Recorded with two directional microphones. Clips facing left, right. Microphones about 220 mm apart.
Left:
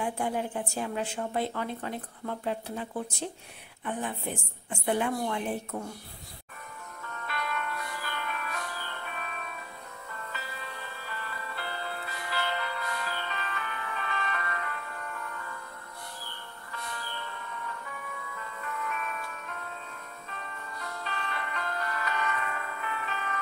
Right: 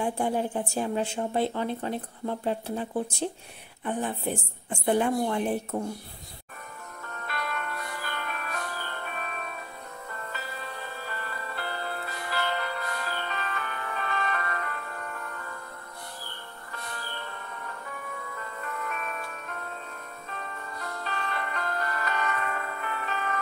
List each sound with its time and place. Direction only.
0.0 s a woman's voice: 30° right (ahead or behind)
4.6 s a woman's voice: 35° right (ahead or behind)
7.1 s music: 45° right (ahead or behind)
17.5 s music: 45° right (ahead or behind)